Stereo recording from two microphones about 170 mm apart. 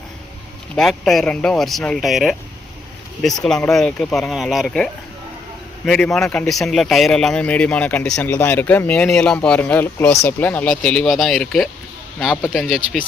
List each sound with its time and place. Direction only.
0.8 s speech: centre (ahead or behind)
3.4 s speech: 5° left (ahead or behind)